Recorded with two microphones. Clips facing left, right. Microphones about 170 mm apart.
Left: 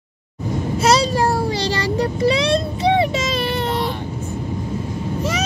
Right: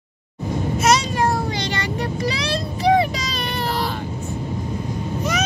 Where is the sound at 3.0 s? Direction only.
25° left (ahead or behind).